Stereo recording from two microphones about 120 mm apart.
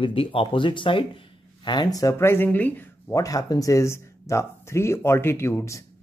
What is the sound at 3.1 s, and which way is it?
Speech, 30° left (ahead or behind).